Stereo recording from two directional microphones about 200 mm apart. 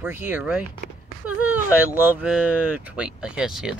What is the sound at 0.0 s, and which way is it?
Speech, 10° right (ahead or behind).